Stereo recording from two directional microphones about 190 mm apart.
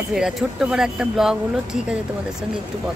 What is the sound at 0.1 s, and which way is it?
Speech, centre (ahead or behind).